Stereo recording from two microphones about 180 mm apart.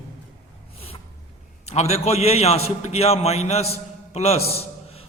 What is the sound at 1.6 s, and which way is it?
A man's voice, 35° left (ahead or behind).